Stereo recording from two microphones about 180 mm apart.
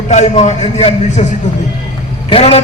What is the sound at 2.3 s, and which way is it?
Speech, 35° left (ahead or behind).